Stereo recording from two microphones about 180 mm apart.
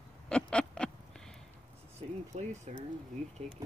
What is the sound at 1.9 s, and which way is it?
Speech, 40° right (ahead or behind).